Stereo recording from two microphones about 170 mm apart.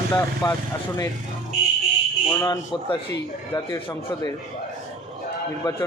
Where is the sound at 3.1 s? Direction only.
20° left (ahead or behind).